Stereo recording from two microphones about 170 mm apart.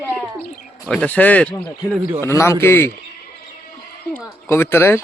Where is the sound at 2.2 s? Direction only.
15° left (ahead or behind).